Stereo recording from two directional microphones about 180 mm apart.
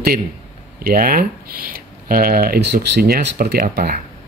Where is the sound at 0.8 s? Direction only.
55° right (ahead or behind).